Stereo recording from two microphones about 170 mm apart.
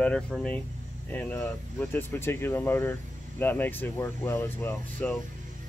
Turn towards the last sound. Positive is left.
turn(degrees=10)  # may be behind; listen again after turning